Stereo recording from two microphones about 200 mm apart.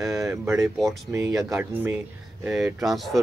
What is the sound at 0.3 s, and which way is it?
Speech, 15° right (ahead or behind).